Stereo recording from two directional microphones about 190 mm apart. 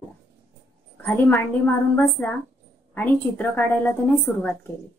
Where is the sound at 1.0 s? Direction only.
10° left (ahead or behind).